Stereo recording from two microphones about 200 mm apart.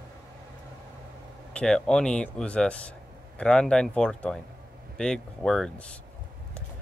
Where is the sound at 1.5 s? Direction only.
5° left (ahead or behind).